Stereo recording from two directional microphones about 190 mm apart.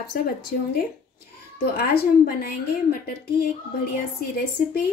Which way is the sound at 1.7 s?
55° left (ahead or behind).